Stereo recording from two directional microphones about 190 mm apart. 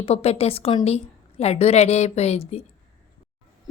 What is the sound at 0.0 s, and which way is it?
A woman's voice, 30° left (ahead or behind).